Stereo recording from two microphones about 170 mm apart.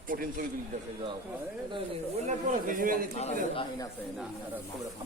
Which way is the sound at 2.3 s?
55° right (ahead or behind).